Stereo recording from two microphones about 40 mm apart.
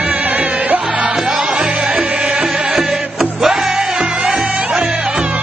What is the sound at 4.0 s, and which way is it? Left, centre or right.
Music, right.